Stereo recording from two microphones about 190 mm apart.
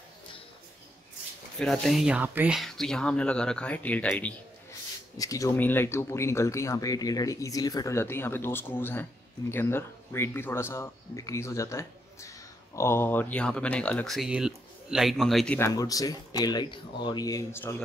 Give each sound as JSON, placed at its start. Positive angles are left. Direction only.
{"t": 1.6, "sound": "speech", "side_deg": 5}
{"t": 5.1, "sound": "speech", "side_deg": 20}
{"t": 15.7, "sound": "speech", "side_deg": 20}